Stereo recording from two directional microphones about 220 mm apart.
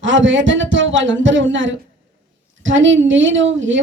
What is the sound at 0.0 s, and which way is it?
A woman's voice, 60° right (ahead or behind).